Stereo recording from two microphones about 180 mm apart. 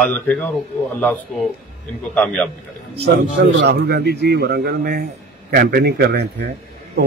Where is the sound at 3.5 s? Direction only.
70° right (ahead or behind).